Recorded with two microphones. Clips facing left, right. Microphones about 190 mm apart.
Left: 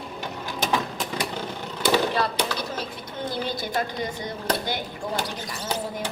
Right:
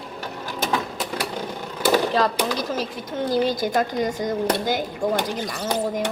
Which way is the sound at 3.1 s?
45° right (ahead or behind).